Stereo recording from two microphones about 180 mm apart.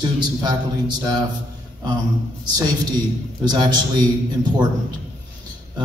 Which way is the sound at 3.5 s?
25° right (ahead or behind).